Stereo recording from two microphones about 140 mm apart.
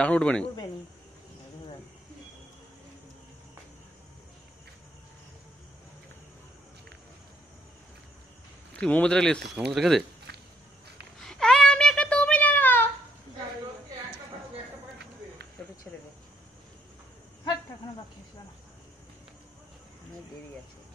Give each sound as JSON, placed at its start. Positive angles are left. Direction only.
{"t": 0.0, "sound": "speech", "side_deg": 10}
{"t": 8.7, "sound": "speech", "side_deg": 10}
{"t": 11.1, "sound": "a sound", "side_deg": 5}